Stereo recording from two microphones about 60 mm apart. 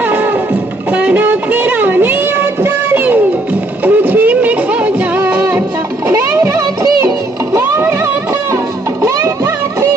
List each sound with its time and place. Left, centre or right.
0.0 s music: right
1.2 s a sound: right
3.8 s music: right
6.1 s music: right
7.8 s music: right